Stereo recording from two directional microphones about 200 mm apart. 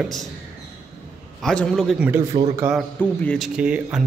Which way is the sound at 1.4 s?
5° left (ahead or behind).